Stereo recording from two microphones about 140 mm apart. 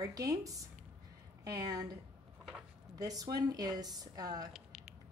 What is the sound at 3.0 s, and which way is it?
A woman's voice, 25° right (ahead or behind).